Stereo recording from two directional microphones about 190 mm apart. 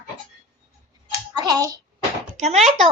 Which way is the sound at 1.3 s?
20° right (ahead or behind).